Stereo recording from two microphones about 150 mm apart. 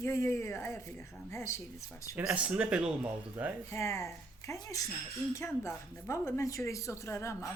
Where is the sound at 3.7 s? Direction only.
20° left (ahead or behind).